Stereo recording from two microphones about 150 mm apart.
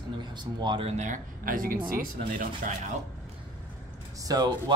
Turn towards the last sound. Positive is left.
turn(degrees=-25)  # may be behind; listen again after turning